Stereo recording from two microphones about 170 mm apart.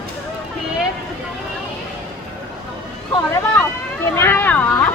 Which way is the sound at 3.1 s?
15° left (ahead or behind).